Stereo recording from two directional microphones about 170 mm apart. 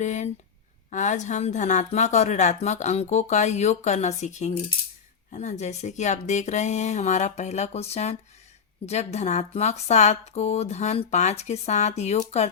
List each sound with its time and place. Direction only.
0.0 s a woman's voice: 45° left (ahead or behind)